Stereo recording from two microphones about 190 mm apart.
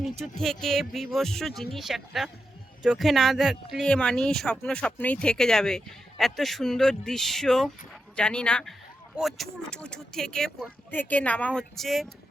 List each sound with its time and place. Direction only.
0.3 s speech: centre (ahead or behind)